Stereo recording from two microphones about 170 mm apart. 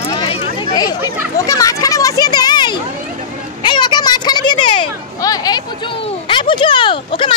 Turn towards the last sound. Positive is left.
turn(degrees=30)  # may be behind; listen again after turning